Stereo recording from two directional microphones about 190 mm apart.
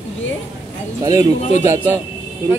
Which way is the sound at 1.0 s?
15° right (ahead or behind).